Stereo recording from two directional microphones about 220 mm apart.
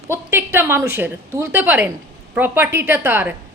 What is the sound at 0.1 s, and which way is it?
A woman's voice, 10° right (ahead or behind).